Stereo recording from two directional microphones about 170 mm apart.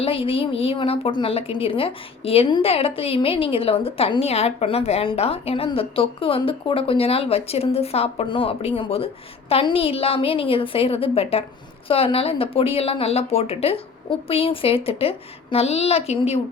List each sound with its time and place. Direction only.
0.0 s a woman's voice: 35° left (ahead or behind)